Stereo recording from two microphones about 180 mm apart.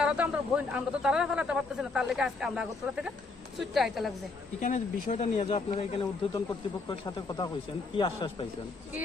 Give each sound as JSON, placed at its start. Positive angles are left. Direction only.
{"t": 0.0, "sound": "speech", "side_deg": -5}
{"t": 4.6, "sound": "speech", "side_deg": 45}
{"t": 6.3, "sound": "speech", "side_deg": 20}